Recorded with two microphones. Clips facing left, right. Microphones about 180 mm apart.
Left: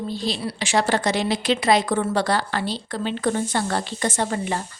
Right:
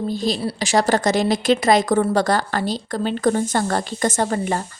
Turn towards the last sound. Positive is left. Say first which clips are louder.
# right 3 dB
turn(degrees=-45)  # may be behind; listen again after turning